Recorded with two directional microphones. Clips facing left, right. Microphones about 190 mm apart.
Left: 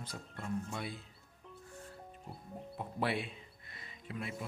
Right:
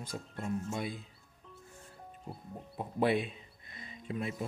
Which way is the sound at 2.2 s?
20° right (ahead or behind).